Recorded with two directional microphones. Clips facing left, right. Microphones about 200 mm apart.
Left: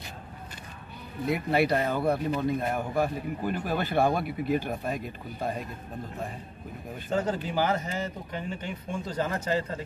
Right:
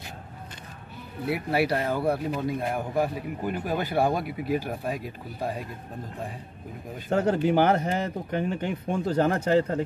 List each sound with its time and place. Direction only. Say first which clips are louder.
1.2 s speech: even; 5° right (ahead or behind)
7.1 s speech: right 6 dB; 65° right (ahead or behind)